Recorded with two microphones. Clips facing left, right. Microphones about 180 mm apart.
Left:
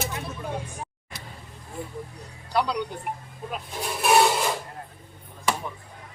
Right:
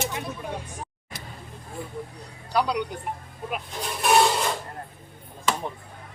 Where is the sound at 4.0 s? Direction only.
5° left (ahead or behind).